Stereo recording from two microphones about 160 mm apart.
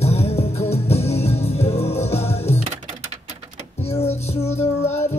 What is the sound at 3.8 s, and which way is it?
Music, 40° left (ahead or behind).